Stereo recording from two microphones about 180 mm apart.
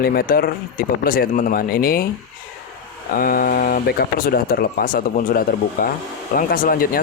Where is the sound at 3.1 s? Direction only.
50° left (ahead or behind).